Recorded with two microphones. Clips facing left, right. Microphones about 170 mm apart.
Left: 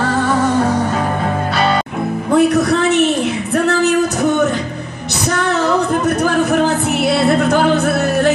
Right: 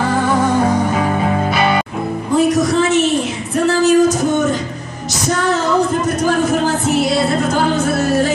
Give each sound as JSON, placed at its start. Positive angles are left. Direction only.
{"t": 0.0, "sound": "music", "side_deg": -10}
{"t": 2.3, "sound": "music", "side_deg": 60}
{"t": 3.5, "sound": "singing", "side_deg": 60}